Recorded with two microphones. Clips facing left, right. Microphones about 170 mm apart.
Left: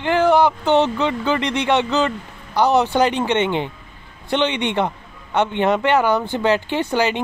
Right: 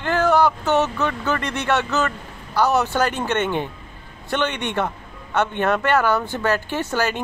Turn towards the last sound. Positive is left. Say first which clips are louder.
# left 3 dB
turn(degrees=15)  # may be behind; listen again after turning